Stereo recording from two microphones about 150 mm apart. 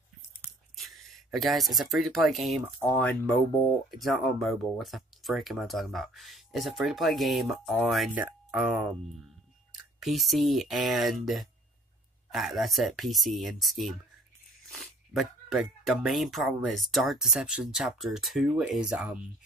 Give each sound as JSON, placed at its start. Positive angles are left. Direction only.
{"t": 0.7, "sound": "speech", "side_deg": 0}
{"t": 8.1, "sound": "speech", "side_deg": -10}